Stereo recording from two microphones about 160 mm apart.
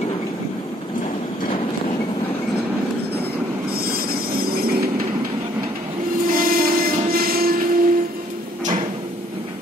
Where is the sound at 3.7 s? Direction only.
65° right (ahead or behind).